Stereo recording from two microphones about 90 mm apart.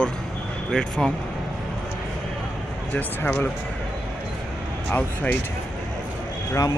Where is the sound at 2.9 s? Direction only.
15° left (ahead or behind).